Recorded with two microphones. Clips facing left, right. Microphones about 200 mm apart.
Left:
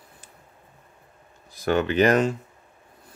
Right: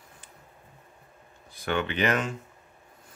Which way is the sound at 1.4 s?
40° left (ahead or behind).